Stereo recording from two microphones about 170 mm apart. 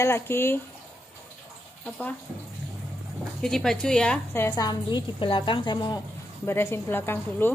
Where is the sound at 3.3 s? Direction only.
5° left (ahead or behind); by 5.9 s 25° left (ahead or behind).